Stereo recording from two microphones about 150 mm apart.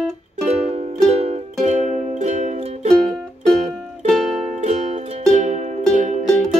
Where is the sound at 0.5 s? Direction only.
45° right (ahead or behind).